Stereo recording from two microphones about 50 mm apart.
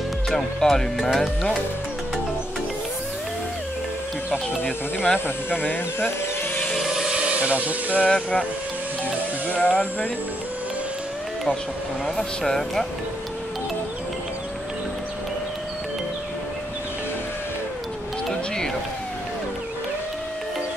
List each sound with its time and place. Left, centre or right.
0.6 s speech: centre
4.3 s speech: left
5.5 s speech: left
6.8 s a sound: centre
7.3 s speech: right
9.5 s speech: left
12.2 s speech: centre